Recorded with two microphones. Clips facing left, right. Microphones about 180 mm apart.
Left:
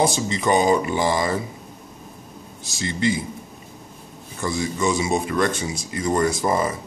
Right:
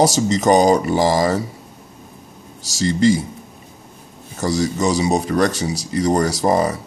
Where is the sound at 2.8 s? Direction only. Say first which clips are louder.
Right 7 dB; 40° right (ahead or behind).